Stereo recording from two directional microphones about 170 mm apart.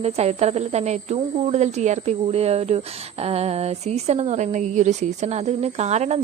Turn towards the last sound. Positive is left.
turn(degrees=-40)  # may be behind; listen again after turning